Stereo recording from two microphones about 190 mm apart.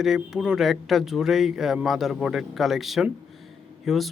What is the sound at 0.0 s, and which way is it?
Speech, centre (ahead or behind).